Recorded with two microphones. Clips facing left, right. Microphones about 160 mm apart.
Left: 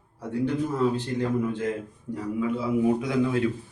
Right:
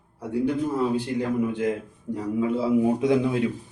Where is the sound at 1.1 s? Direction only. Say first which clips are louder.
Right 1 dB; 15° right (ahead or behind).